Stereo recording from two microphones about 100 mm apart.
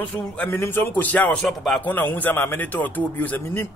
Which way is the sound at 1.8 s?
20° left (ahead or behind).